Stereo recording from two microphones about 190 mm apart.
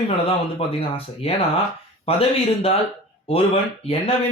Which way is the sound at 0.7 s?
30° left (ahead or behind).